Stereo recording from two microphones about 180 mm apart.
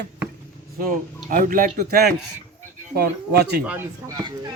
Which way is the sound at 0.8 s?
50° right (ahead or behind).